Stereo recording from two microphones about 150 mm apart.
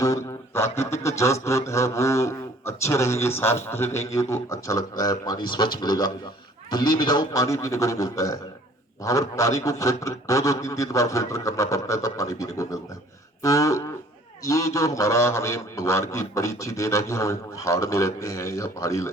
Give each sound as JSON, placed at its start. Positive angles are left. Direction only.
{"t": 0.0, "sound": "a man's voice", "side_deg": 20}